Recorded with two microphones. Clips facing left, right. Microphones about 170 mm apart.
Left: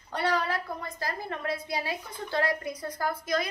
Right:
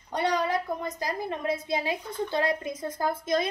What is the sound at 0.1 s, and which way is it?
A woman's voice, 20° right (ahead or behind).